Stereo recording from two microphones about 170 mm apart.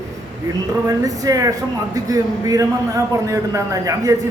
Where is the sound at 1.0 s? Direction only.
20° right (ahead or behind).